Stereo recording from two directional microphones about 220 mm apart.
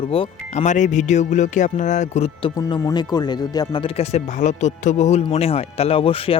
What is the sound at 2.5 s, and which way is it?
Speech, 15° left (ahead or behind).